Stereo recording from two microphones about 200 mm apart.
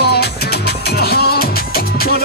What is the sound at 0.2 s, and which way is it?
Music, 55° left (ahead or behind).